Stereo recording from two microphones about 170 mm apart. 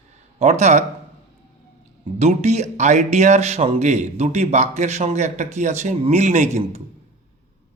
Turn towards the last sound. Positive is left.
turn(degrees=-40)  # may be behind; listen again after turning